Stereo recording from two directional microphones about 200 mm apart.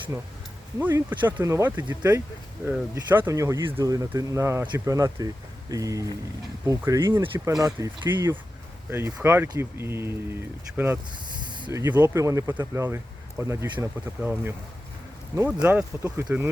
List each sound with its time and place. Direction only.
0.8 s speech: 10° right (ahead or behind)
11.3 s speech: 20° right (ahead or behind)
15.6 s speech: 10° right (ahead or behind)